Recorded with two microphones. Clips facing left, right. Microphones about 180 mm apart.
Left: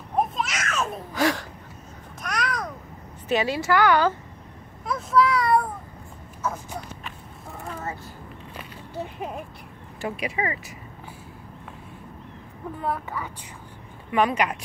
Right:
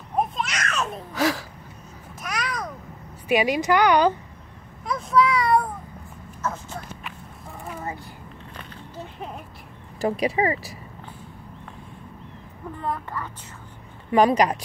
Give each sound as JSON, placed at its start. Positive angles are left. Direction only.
{"t": 0.4, "sound": "a sound", "side_deg": 5}
{"t": 2.2, "sound": "babbling", "side_deg": 0}
{"t": 3.3, "sound": "a woman's voice", "side_deg": -15}
{"t": 4.8, "sound": "a child's voice", "side_deg": 0}
{"t": 6.4, "sound": "speech", "side_deg": 10}
{"t": 7.6, "sound": "a sound", "side_deg": -15}
{"t": 10.0, "sound": "speech", "side_deg": -35}
{"t": 12.7, "sound": "a woman's voice", "side_deg": 5}
{"t": 14.1, "sound": "speech", "side_deg": -35}